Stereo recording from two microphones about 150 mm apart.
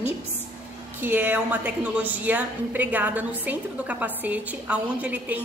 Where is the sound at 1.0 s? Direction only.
15° right (ahead or behind).